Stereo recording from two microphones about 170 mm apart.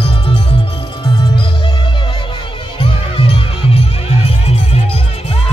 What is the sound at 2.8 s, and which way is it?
Music, 35° left (ahead or behind).